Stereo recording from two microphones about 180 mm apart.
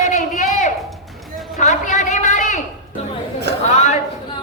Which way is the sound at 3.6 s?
40° left (ahead or behind).